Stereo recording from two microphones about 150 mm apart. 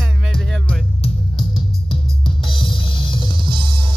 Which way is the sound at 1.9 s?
35° left (ahead or behind).